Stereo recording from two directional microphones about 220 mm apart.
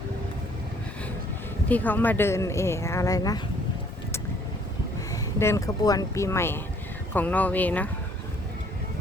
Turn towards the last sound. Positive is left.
turn(degrees=5)  # may be behind; listen again after turning